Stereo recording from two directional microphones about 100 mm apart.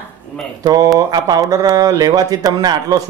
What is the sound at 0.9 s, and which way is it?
Speech, 40° right (ahead or behind).